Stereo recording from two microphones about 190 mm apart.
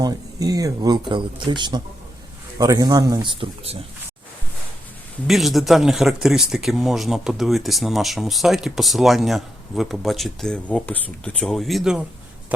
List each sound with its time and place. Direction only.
0.0 s speech: 20° right (ahead or behind)
5.3 s speech: centre (ahead or behind)